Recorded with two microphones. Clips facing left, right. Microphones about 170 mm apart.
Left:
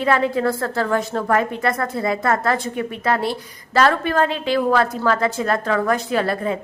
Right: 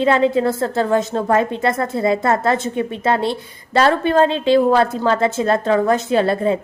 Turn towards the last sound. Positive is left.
turn(degrees=-25)  # may be behind; listen again after turning